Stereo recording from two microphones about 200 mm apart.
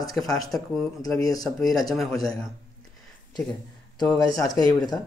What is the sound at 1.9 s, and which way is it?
Speech, centre (ahead or behind).